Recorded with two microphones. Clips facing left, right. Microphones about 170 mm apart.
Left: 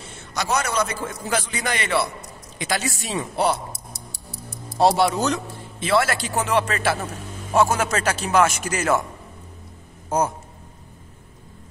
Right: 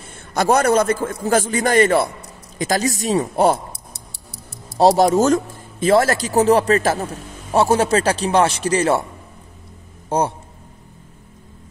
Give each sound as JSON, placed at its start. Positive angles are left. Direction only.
{"t": 0.0, "sound": "a man's voice", "side_deg": -50}
{"t": 4.7, "sound": "a man's voice", "side_deg": -40}
{"t": 10.0, "sound": "a man's voice", "side_deg": -30}